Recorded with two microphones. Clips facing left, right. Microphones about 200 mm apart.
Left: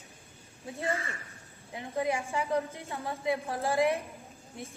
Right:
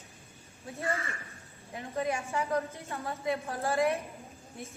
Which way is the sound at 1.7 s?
15° left (ahead or behind).